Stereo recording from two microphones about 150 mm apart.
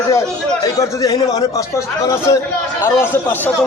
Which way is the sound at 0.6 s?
25° left (ahead or behind).